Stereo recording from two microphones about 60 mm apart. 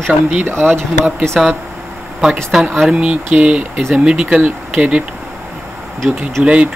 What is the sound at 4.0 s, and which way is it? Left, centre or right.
Speech, centre.